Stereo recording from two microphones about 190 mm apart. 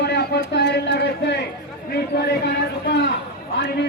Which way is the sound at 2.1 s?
60° left (ahead or behind).